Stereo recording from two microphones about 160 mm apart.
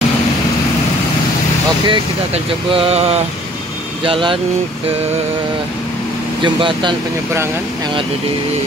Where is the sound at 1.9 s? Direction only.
35° right (ahead or behind).